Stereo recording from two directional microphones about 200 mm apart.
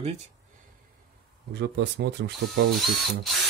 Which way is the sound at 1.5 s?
55° right (ahead or behind).